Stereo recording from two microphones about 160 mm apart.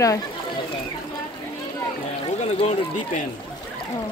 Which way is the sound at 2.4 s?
45° left (ahead or behind).